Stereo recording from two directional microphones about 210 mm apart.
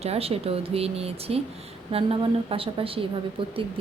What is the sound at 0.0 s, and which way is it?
A woman's voice, 30° right (ahead or behind).